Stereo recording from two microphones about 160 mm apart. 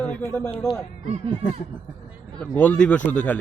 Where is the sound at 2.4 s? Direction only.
10° left (ahead or behind).